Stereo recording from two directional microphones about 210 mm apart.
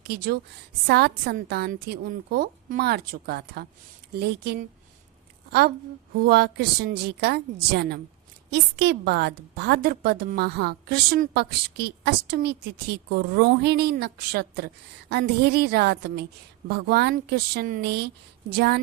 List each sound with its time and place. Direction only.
0.9 s a woman's voice: 50° right (ahead or behind)